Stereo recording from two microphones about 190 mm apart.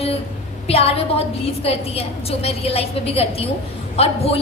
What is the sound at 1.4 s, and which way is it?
A woman's voice, 30° left (ahead or behind).